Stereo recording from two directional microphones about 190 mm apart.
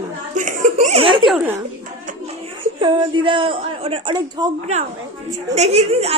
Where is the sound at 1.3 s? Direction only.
5° right (ahead or behind).